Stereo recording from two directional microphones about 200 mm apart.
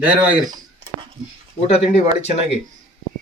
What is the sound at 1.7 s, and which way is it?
Speech, 35° left (ahead or behind).